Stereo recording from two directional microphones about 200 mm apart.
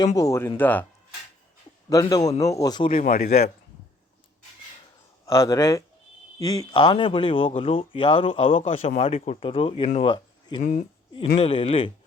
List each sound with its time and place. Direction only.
0.2 s speech: 15° left (ahead or behind)
1.9 s speech: 15° left (ahead or behind)
2.9 s speech: 40° left (ahead or behind)
5.2 s a man's voice: 15° left (ahead or behind)
10.6 s speech: 40° left (ahead or behind)
11.3 s speech: 30° left (ahead or behind)